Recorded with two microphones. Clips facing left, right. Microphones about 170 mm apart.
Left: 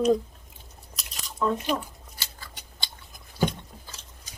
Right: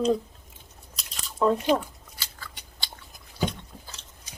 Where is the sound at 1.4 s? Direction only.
30° right (ahead or behind).